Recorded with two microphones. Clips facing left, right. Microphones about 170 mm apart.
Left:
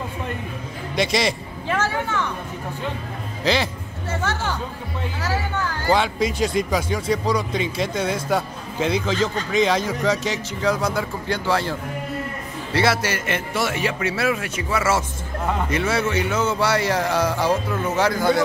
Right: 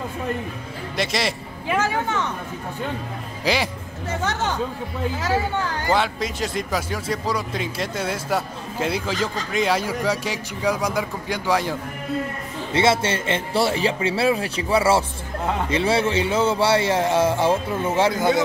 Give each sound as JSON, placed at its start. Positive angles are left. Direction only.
{"t": 0.9, "sound": "speech", "side_deg": 0}
{"t": 1.7, "sound": "speech", "side_deg": -15}
{"t": 3.5, "sound": "speech", "side_deg": -10}
{"t": 5.9, "sound": "speech", "side_deg": 0}
{"t": 12.7, "sound": "a man's voice", "side_deg": -25}